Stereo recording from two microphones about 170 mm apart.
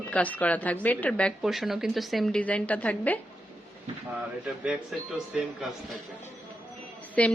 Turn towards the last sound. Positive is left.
turn(degrees=5)  # may be behind; listen again after turning